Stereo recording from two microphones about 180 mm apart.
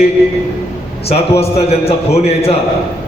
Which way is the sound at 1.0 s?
35° left (ahead or behind).